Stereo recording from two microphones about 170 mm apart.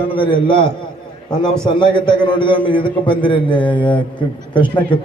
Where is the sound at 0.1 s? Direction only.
30° left (ahead or behind).